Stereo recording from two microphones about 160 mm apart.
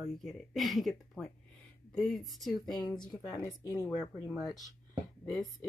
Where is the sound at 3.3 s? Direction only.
20° left (ahead or behind).